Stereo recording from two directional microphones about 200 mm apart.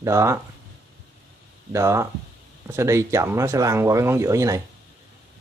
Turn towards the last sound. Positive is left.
turn(degrees=-15)  # may be behind; listen again after turning